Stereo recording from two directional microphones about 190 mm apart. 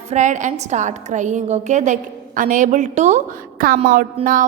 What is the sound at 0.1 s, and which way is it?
A woman's voice, 40° right (ahead or behind).